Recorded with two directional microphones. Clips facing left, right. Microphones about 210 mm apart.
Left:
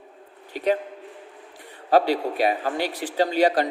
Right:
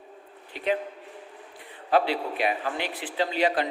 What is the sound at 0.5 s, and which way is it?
Speech, 40° left (ahead or behind).